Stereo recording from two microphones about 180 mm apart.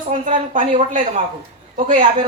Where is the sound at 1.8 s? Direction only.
45° right (ahead or behind).